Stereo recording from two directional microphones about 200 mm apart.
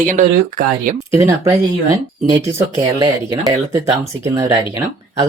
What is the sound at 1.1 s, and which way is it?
Speech, 15° right (ahead or behind).